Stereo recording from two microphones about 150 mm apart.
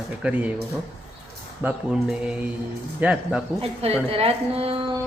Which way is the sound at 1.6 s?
10° right (ahead or behind).